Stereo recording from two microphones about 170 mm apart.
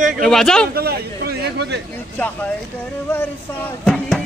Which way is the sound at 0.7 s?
65° right (ahead or behind).